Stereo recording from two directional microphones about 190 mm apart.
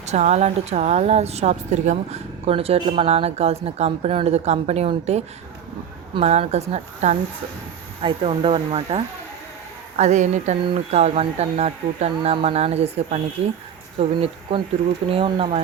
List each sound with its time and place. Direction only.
0.0 s speech: 35° right (ahead or behind)